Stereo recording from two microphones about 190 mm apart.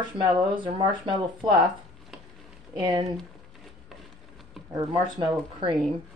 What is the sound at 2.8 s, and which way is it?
Speech, 20° right (ahead or behind).